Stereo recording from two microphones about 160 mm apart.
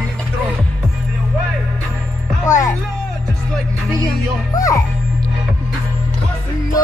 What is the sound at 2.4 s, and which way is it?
Music, 20° left (ahead or behind).